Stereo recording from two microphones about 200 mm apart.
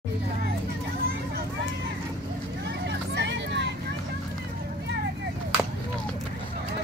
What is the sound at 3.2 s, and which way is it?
Vehicle, 60° right (ahead or behind).